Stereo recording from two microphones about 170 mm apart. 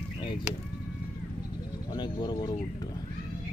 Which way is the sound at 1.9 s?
25° left (ahead or behind).